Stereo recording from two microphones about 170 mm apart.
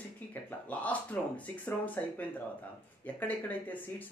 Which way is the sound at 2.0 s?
10° left (ahead or behind).